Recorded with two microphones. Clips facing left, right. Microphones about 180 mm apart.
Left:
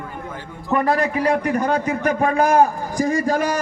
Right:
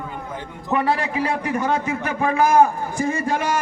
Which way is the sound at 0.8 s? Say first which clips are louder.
Left 2 dB; 40° left (ahead or behind).